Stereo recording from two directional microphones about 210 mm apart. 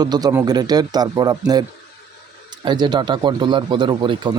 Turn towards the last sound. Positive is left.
turn(degrees=-20)  # may be behind; listen again after turning